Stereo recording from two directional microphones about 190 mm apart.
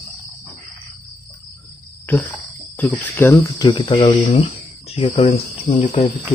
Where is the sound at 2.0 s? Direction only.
10° left (ahead or behind).